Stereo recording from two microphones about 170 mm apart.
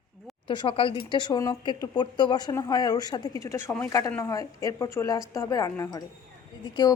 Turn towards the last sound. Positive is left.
turn(degrees=25)  # may be behind; listen again after turning